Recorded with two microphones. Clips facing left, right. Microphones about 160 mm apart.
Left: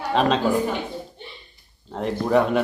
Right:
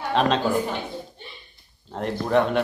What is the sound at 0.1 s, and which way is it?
Speech, centre (ahead or behind).